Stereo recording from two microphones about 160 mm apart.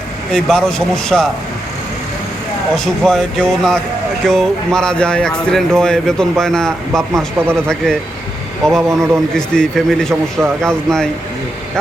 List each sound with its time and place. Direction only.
0.3 s speech: 5° left (ahead or behind)
2.7 s speech: 5° left (ahead or behind)
8.9 s speech: 20° right (ahead or behind)
9.3 s speech: 5° left (ahead or behind)